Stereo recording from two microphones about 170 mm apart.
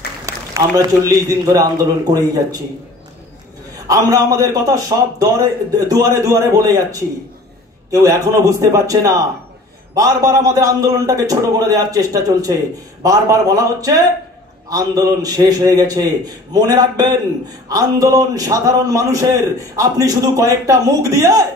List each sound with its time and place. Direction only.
0.3 s a man's voice: 20° right (ahead or behind)
3.8 s a man's voice: 20° right (ahead or behind)